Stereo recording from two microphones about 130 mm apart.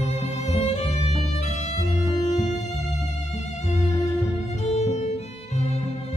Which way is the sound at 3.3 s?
60° left (ahead or behind).